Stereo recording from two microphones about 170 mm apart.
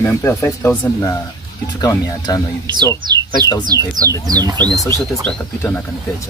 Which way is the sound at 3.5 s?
20° left (ahead or behind).